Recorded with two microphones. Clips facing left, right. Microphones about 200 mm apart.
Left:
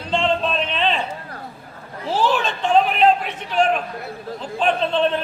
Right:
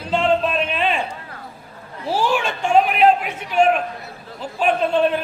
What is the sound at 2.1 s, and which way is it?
A man's voice, 10° right (ahead or behind).